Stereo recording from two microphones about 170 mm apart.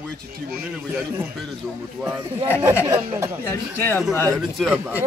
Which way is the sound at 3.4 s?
15° left (ahead or behind).